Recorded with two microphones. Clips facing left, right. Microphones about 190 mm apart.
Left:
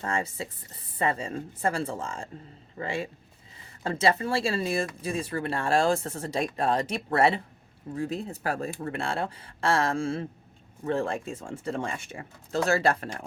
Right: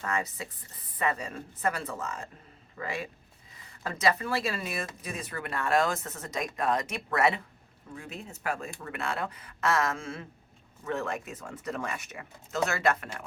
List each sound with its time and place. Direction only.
0.0 s a woman's voice: 30° left (ahead or behind)